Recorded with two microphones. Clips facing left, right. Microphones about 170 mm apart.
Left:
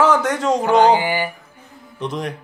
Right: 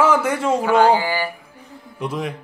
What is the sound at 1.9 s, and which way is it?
Speech, 5° right (ahead or behind).